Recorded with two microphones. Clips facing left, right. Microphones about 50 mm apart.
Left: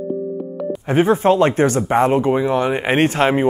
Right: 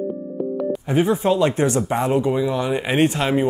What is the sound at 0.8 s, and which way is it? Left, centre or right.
Speech, left.